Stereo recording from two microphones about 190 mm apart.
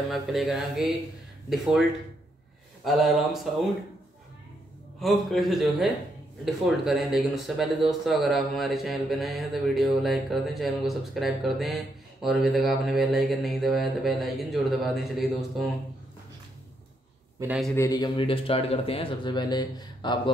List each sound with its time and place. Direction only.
0.1 s speech: centre (ahead or behind)
5.0 s speech: centre (ahead or behind)
17.4 s a man's voice: 15° right (ahead or behind)
17.7 s speech: 20° left (ahead or behind)